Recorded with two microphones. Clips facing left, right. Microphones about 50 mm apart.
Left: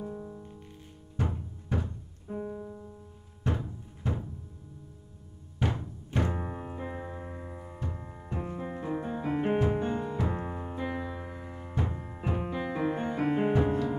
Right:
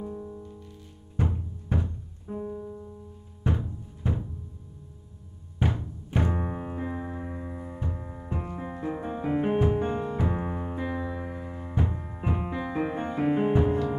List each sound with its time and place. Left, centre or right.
0.1 s music: centre
1.7 s music: centre
2.4 s piano: centre
3.4 s music: centre
5.6 s music: centre
10.8 s music: centre